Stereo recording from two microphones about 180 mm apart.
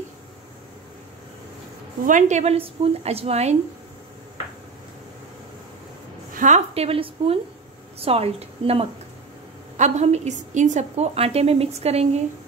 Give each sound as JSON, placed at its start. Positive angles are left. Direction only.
{"t": 2.0, "sound": "a woman's voice", "side_deg": -45}
{"t": 6.3, "sound": "a woman's voice", "side_deg": -40}